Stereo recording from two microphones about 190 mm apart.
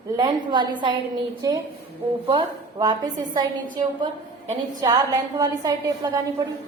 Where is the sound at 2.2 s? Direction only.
25° right (ahead or behind).